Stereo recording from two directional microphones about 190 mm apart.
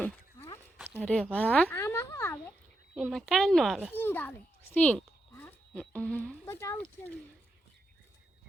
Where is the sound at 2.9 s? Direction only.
Centre (ahead or behind).